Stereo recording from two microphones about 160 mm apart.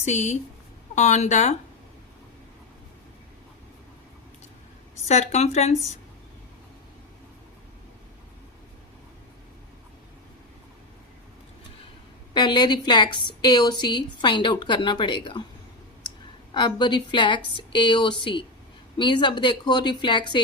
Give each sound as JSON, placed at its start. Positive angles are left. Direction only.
{"t": 0.0, "sound": "speech", "side_deg": 45}
{"t": 5.0, "sound": "speech", "side_deg": 45}
{"t": 12.3, "sound": "a woman's voice", "side_deg": 30}
{"t": 16.6, "sound": "a woman's voice", "side_deg": 30}